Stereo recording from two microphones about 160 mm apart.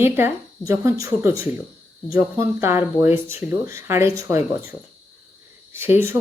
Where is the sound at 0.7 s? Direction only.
20° right (ahead or behind).